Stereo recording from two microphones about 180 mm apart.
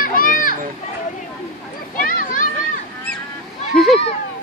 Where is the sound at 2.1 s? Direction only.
50° left (ahead or behind).